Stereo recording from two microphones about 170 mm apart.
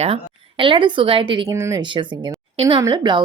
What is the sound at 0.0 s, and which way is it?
Speech, 35° right (ahead or behind).